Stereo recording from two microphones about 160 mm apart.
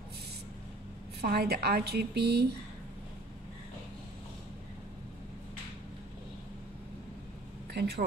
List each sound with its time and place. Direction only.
1.2 s a woman's voice: 75° right (ahead or behind)
7.7 s speech: 90° right